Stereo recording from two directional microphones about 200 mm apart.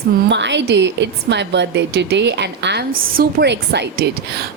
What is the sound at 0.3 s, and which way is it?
A woman's voice, 60° right (ahead or behind).